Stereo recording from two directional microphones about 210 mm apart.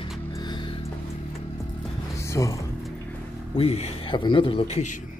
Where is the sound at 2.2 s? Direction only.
15° left (ahead or behind).